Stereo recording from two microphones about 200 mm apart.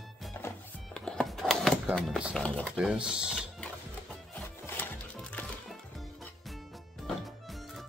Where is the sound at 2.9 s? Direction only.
5° right (ahead or behind).